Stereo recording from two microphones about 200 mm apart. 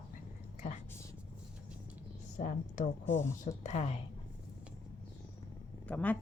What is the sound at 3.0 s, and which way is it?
Speech, 10° left (ahead or behind).